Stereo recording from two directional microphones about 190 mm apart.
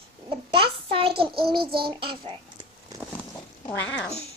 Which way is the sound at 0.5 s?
30° right (ahead or behind).